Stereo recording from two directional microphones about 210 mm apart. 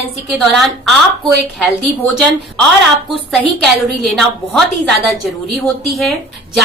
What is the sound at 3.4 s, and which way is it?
A woman's voice, centre (ahead or behind).